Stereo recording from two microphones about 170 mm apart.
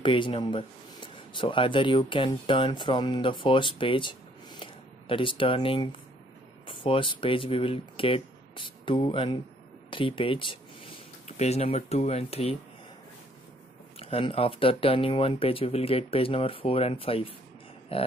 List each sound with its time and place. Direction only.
0.0 s speech: 30° left (ahead or behind)
13.9 s speech: 35° left (ahead or behind)